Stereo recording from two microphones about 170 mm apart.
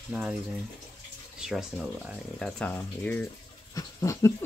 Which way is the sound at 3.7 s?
20° left (ahead or behind).